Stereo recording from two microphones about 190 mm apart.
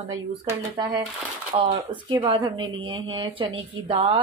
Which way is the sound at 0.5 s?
15° right (ahead or behind).